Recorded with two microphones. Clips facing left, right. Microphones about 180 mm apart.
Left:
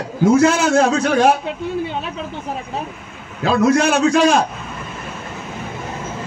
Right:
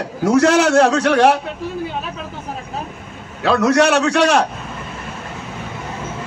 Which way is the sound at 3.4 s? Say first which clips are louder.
Right 1 dB; 75° right (ahead or behind).